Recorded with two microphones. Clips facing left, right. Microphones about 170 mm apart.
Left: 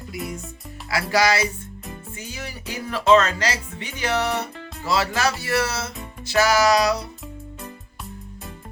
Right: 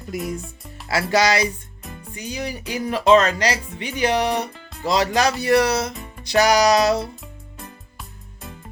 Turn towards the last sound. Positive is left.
turn(degrees=-25)  # may be behind; listen again after turning